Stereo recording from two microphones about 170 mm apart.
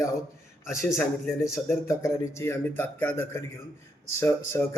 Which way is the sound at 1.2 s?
Centre (ahead or behind).